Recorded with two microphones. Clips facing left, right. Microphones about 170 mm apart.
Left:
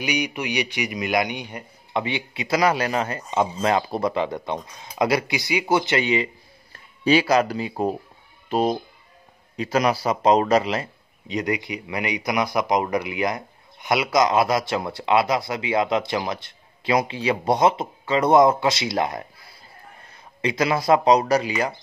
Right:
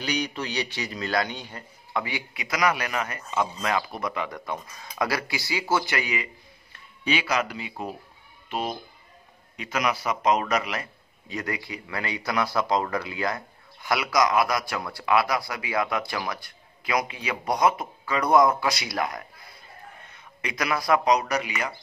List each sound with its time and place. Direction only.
0.0 s a man's voice: 15° left (ahead or behind)
6.7 s a man's voice: 35° left (ahead or behind)